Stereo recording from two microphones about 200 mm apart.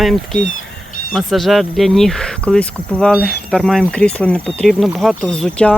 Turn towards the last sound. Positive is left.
turn(degrees=5)  # may be behind; listen again after turning